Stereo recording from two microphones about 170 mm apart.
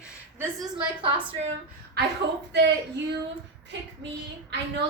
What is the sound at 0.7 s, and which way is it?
Speech, 30° right (ahead or behind).